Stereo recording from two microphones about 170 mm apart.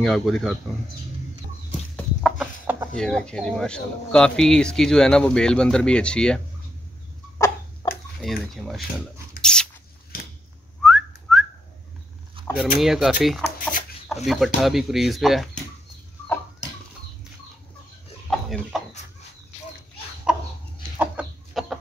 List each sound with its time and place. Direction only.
0.0 s speech: centre (ahead or behind)
1.7 s chicken: 5° left (ahead or behind)
2.3 s chicken: 10° right (ahead or behind)
3.0 s speech: 5° left (ahead or behind)
7.3 s a sound: 20° left (ahead or behind)
8.2 s speech: centre (ahead or behind)
9.4 s a sound: 5° left (ahead or behind)
10.8 s whistling: centre (ahead or behind)
12.5 s speech: centre (ahead or behind)
18.3 s chicken: centre (ahead or behind)
20.3 s chicken: 5° right (ahead or behind)